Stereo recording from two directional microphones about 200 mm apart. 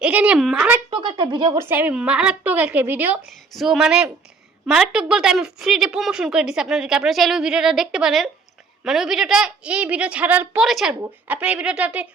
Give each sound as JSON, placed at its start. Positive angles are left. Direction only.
{"t": 0.0, "sound": "a woman's voice", "side_deg": -5}
{"t": 0.9, "sound": "speech", "side_deg": -20}
{"t": 1.6, "sound": "a woman's voice", "side_deg": -10}